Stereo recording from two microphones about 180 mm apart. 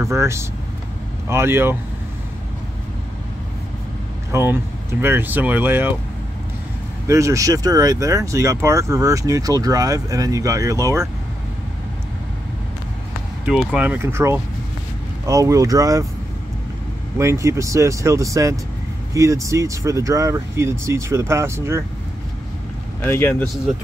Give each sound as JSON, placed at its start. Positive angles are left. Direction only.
{"t": 0.0, "sound": "speech", "side_deg": -15}
{"t": 4.3, "sound": "speech", "side_deg": -10}
{"t": 7.1, "sound": "speech", "side_deg": -15}
{"t": 13.5, "sound": "speech", "side_deg": 0}
{"t": 17.2, "sound": "speech", "side_deg": -15}
{"t": 23.0, "sound": "speech", "side_deg": 10}